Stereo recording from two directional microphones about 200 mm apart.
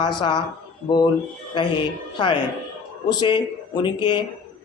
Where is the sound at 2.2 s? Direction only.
25° left (ahead or behind).